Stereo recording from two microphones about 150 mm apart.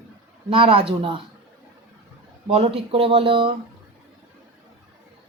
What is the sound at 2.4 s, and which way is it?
Speech, 40° right (ahead or behind).